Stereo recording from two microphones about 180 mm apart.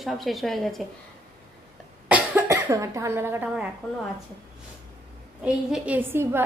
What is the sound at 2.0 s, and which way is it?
Cough, 10° right (ahead or behind).